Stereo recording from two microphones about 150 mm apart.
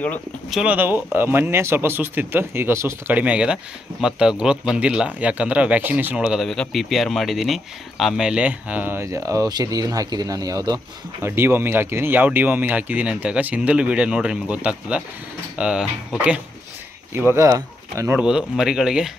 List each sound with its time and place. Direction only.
0.5 s speech: centre (ahead or behind)
0.7 s speech: 15° right (ahead or behind)
18.2 s speech: 5° right (ahead or behind)